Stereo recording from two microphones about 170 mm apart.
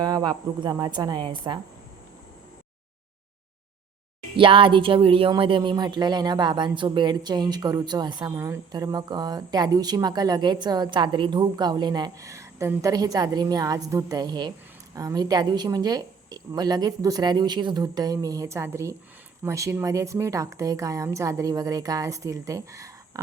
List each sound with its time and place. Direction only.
0.0 s speech: 25° right (ahead or behind)
4.4 s speech: 30° right (ahead or behind)